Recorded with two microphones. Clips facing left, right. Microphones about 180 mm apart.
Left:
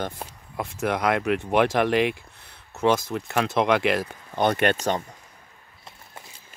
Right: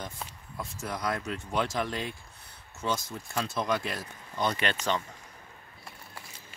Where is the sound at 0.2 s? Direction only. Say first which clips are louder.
Left 4 dB; 55° left (ahead or behind).